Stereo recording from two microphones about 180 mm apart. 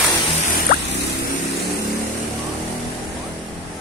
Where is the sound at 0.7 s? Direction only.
45° left (ahead or behind).